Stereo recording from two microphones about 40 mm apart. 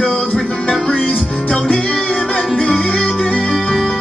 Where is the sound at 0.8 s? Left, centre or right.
Left.